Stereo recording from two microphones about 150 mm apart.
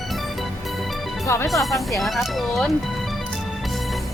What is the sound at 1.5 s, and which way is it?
Speech, centre (ahead or behind).